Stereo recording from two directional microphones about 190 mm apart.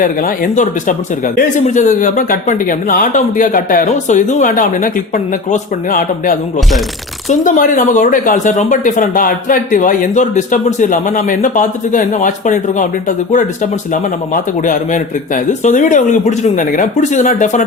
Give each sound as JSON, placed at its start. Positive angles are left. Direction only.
{"t": 0.0, "sound": "speech", "side_deg": 45}